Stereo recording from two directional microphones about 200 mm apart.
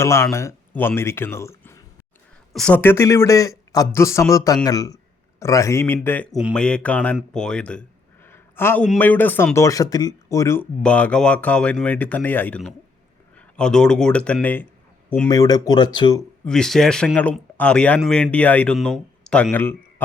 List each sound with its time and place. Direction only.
0.0 s speech: 15° left (ahead or behind)
2.5 s a man's voice: 5° left (ahead or behind); by 16.2 s 20° left (ahead or behind)
16.5 s speech: centre (ahead or behind)